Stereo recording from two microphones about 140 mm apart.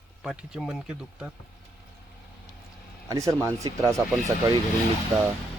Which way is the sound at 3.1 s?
20° right (ahead or behind).